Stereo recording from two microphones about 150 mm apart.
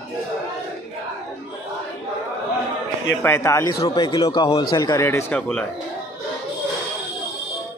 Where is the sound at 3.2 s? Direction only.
15° left (ahead or behind).